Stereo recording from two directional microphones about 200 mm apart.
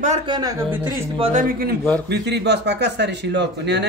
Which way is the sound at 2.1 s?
60° right (ahead or behind).